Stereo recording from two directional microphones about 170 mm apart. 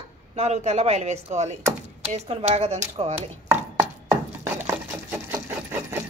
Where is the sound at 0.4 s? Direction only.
40° right (ahead or behind).